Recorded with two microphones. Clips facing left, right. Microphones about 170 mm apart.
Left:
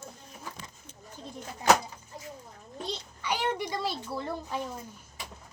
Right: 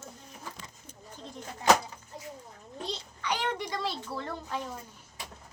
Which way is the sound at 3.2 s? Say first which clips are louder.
Left 2 dB; 10° left (ahead or behind).